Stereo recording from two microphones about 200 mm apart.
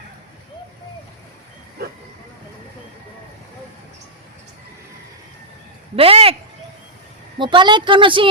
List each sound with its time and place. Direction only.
6.0 s a woman's voice: 30° right (ahead or behind)
7.3 s a woman's voice: 25° right (ahead or behind)